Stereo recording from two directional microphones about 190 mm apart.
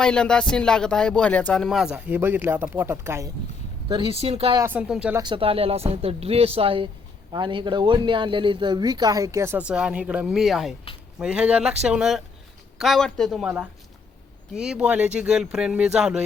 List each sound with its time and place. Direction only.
0.0 s speech: 5° left (ahead or behind); by 4.5 s 30° right (ahead or behind)
4.5 s speech: 10° right (ahead or behind)
5.1 s speech: 25° right (ahead or behind); by 13.5 s centre (ahead or behind)
14.5 s speech: 5° right (ahead or behind)